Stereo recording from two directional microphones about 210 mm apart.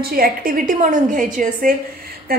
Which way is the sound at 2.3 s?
45° right (ahead or behind).